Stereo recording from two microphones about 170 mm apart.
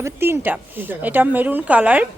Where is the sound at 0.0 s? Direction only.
15° right (ahead or behind).